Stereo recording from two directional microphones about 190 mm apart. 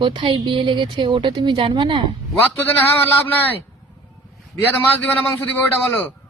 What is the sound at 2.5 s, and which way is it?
A man's voice, 10° left (ahead or behind).